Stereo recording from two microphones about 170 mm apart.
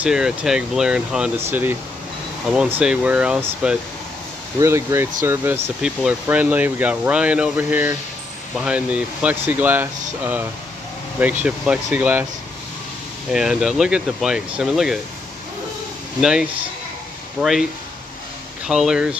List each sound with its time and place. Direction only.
0.0 s speech: 5° right (ahead or behind)
11.4 s speech: 5° right (ahead or behind)
13.3 s speech: 5° right (ahead or behind)
16.2 s speech: 5° right (ahead or behind)
18.7 s speech: 5° right (ahead or behind)